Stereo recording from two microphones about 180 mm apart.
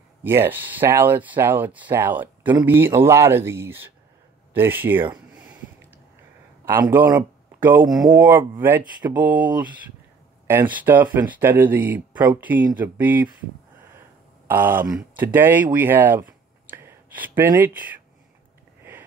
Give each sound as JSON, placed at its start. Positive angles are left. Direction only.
{"t": 0.2, "sound": "speech", "side_deg": -10}
{"t": 6.6, "sound": "speech", "side_deg": -10}
{"t": 14.5, "sound": "speech", "side_deg": -10}